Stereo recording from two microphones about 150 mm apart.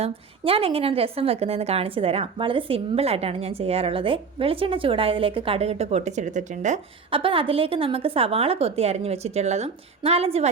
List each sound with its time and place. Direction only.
0.0 s a woman's voice: 40° right (ahead or behind)
7.1 s a woman's voice: 35° right (ahead or behind)